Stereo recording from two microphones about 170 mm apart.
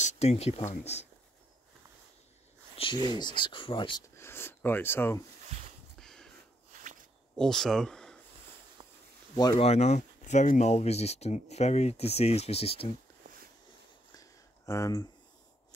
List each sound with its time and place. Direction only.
0.0 s speech: 40° left (ahead or behind)
3.1 s speech: 25° left (ahead or behind)
4.2 s speech: 15° left (ahead or behind)
5.9 s a sound: 5° left (ahead or behind)
6.7 s walk: 50° right (ahead or behind)
7.3 s speech: 5° left (ahead or behind)
9.6 s speech: 40° left (ahead or behind)
13.2 s a sound: 50° right (ahead or behind)
14.1 s a sound: 20° left (ahead or behind)